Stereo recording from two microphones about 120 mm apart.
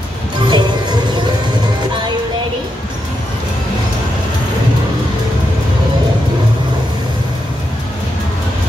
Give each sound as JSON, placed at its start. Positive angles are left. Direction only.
{"t": 0.5, "sound": "music", "side_deg": -40}